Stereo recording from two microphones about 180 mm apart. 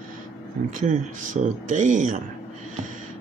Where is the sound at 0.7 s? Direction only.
45° right (ahead or behind).